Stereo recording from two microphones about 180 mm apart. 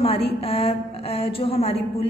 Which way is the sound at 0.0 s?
30° left (ahead or behind).